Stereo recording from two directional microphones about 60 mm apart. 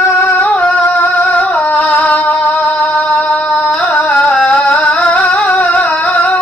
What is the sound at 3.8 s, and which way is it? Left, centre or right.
Music, left.